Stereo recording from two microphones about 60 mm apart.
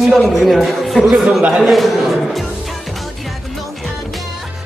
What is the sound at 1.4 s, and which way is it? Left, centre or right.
Speech, centre.